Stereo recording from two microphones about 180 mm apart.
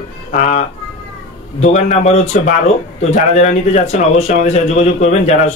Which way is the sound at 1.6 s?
40° left (ahead or behind).